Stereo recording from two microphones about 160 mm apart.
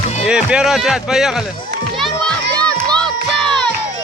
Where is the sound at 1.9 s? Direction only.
5° left (ahead or behind).